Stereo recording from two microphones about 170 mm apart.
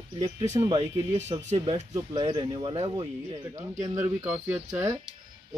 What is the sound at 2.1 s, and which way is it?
Speech, 30° right (ahead or behind).